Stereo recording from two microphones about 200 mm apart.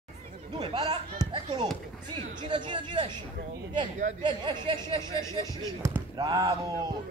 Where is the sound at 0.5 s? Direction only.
25° right (ahead or behind).